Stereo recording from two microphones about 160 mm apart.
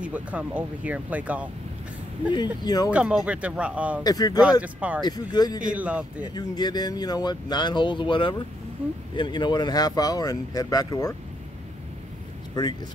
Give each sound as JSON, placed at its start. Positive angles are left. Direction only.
{"t": 0.0, "sound": "speech", "side_deg": -10}
{"t": 2.3, "sound": "speech", "side_deg": 25}
{"t": 2.9, "sound": "speech", "side_deg": -5}
{"t": 4.0, "sound": "speech", "side_deg": 25}
{"t": 4.7, "sound": "speech", "side_deg": -10}
{"t": 5.0, "sound": "speech", "side_deg": 25}
{"t": 5.6, "sound": "speech", "side_deg": -5}
{"t": 6.3, "sound": "speech", "side_deg": 25}